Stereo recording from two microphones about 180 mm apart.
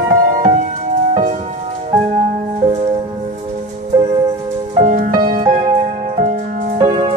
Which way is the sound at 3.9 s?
25° right (ahead or behind).